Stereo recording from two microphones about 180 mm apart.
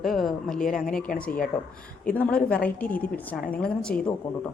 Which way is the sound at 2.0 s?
5° left (ahead or behind).